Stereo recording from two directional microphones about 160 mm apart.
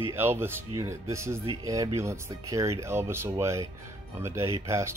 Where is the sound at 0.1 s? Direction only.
15° right (ahead or behind).